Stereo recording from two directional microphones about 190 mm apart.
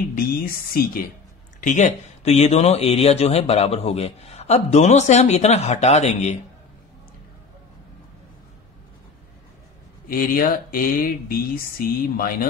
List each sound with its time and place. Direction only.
0.8 s speech: 55° left (ahead or behind)
1.6 s speech: 40° left (ahead or behind)
10.0 s speech: 50° left (ahead or behind)